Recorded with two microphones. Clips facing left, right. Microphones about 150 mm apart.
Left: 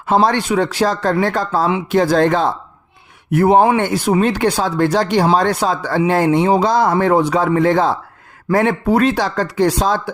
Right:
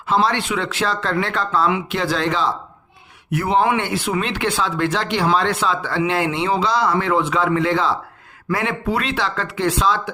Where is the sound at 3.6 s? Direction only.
40° left (ahead or behind).